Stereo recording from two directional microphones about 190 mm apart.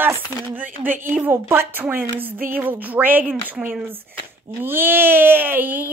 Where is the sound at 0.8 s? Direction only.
10° right (ahead or behind).